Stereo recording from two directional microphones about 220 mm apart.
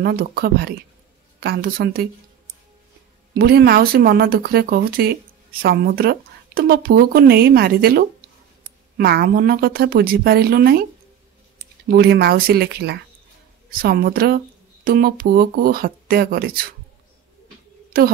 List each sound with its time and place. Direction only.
0.0 s speech: 45° right (ahead or behind)
3.3 s speech: 45° right (ahead or behind)
11.9 s speech: 45° right (ahead or behind)